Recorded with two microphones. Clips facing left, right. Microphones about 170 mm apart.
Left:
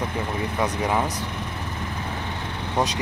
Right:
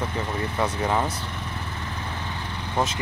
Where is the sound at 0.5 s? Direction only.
10° left (ahead or behind).